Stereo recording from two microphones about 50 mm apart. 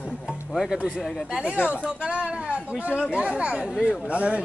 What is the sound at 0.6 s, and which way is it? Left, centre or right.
Speech, centre.